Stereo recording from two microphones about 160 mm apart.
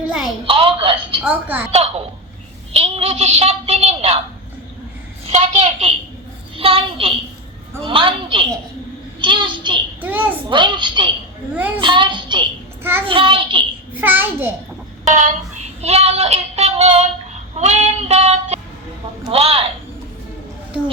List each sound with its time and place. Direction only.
0.0 s a sound: 5° right (ahead or behind)
0.4 s a woman's voice: 35° right (ahead or behind)
1.2 s a child's voice: 10° right (ahead or behind)
1.7 s a child's voice: 40° right (ahead or behind)
5.2 s a child's voice: 40° right (ahead or behind)
10.0 s a child's voice: 10° right (ahead or behind)
10.5 s a child's voice: 30° right (ahead or behind)
12.8 s a child's voice: 15° right (ahead or behind)
13.1 s a child's voice: 35° right (ahead or behind)
14.0 s a child's voice: 10° right (ahead or behind)
15.0 s child singing: 50° right (ahead or behind)
19.3 s a child's voice: 35° right (ahead or behind)